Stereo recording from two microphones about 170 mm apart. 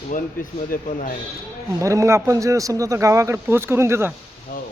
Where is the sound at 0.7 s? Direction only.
50° left (ahead or behind).